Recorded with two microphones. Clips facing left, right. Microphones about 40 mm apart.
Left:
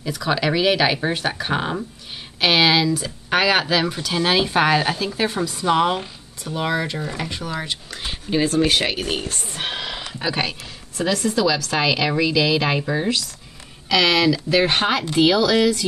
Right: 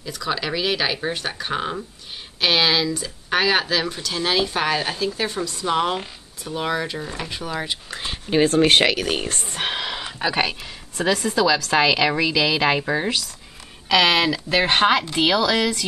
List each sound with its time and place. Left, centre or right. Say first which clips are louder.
0.0 s a woman's voice: left 4 dB; centre
9.0 s speech: right 1 dB; right
9.6 s a woman's voice: right 2 dB; centre